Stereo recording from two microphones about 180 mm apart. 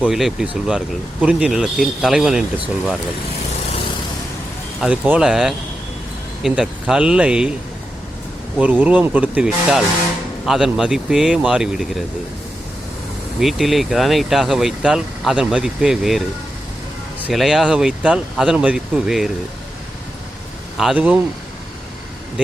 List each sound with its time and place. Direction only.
0.0 s speech: centre (ahead or behind)
4.8 s speech: 5° right (ahead or behind)
8.5 s speech: 10° right (ahead or behind)
13.4 s speech: centre (ahead or behind)
20.7 s speech: 5° right (ahead or behind)